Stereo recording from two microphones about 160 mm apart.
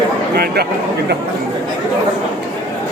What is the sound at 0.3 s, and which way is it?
Speech, 75° right (ahead or behind).